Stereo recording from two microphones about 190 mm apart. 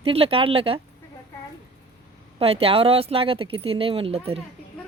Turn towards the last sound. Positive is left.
turn(degrees=-30)  # may be behind; listen again after turning